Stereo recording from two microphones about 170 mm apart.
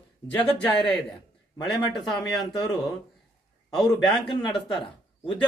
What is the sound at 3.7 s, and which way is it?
Speech, centre (ahead or behind).